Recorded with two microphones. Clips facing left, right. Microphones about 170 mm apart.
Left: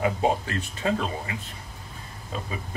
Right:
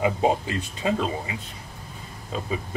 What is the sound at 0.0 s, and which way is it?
Speech, 15° right (ahead or behind).